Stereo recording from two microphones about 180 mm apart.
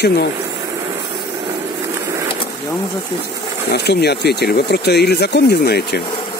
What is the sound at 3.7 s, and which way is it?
Speech, 65° left (ahead or behind).